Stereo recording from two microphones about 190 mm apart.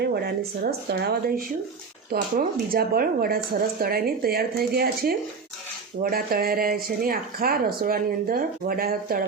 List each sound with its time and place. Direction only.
0.0 s speech: 60° right (ahead or behind)